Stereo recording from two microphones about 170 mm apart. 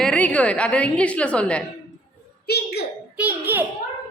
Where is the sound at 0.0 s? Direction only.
5° left (ahead or behind).